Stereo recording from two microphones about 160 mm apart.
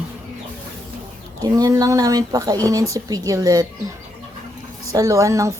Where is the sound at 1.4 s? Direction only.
20° right (ahead or behind).